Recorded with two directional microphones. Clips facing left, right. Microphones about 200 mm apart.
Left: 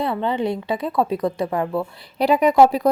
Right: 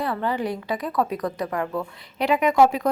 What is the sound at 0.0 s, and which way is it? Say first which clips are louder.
A woman's voice: left 3 dB; 25° left (ahead or behind).